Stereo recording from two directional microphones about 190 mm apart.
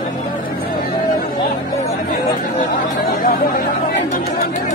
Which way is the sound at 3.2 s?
50° left (ahead or behind).